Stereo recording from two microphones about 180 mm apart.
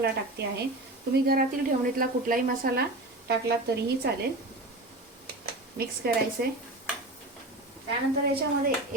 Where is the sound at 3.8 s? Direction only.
60° right (ahead or behind).